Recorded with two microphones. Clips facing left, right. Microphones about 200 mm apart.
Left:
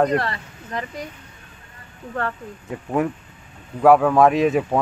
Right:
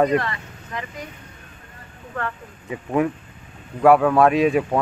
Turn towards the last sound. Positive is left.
turn(degrees=5)  # may be behind; listen again after turning